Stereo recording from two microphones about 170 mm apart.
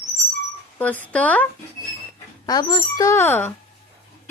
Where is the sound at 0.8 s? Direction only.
10° left (ahead or behind).